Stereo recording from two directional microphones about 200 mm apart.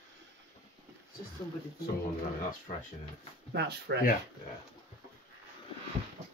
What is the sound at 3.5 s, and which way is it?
Speech, 60° right (ahead or behind).